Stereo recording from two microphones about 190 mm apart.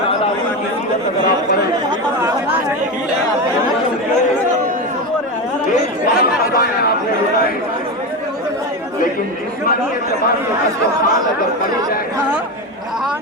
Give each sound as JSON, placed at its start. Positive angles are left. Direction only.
{"t": 5.7, "sound": "chatter", "side_deg": 50}